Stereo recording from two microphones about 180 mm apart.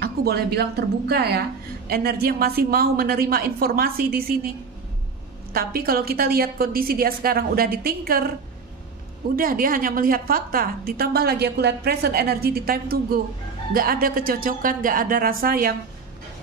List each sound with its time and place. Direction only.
0.0 s a woman's voice: 65° right (ahead or behind)
5.5 s a woman's voice: 55° right (ahead or behind)
9.3 s a woman's voice: 50° right (ahead or behind)